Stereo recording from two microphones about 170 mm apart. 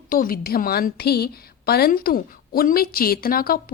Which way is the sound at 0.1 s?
55° left (ahead or behind).